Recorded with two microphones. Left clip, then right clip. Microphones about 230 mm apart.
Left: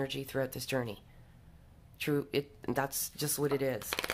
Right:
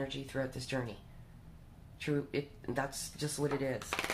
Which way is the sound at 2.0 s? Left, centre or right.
Left.